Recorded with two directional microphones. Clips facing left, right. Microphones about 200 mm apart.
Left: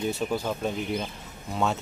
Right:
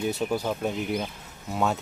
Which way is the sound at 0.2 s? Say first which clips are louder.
Right 1 dB; 10° right (ahead or behind).